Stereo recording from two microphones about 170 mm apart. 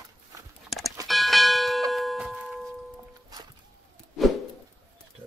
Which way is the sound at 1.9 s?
Centre (ahead or behind).